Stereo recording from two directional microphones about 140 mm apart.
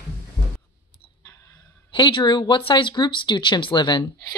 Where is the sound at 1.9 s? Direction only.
35° left (ahead or behind).